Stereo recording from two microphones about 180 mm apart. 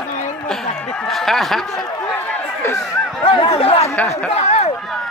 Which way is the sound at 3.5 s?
30° left (ahead or behind).